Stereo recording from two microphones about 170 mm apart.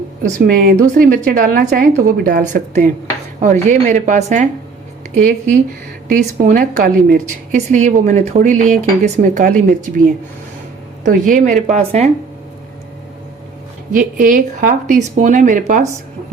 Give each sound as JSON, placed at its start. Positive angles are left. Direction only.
{"t": 0.2, "sound": "a woman's voice", "side_deg": -55}
{"t": 7.5, "sound": "a woman's voice", "side_deg": -45}
{"t": 11.0, "sound": "a woman's voice", "side_deg": -50}
{"t": 11.6, "sound": "speech", "side_deg": -35}
{"t": 14.2, "sound": "a woman's voice", "side_deg": -55}